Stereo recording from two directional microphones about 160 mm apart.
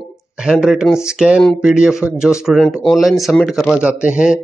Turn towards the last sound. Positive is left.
turn(degrees=-5)  # may be behind; listen again after turning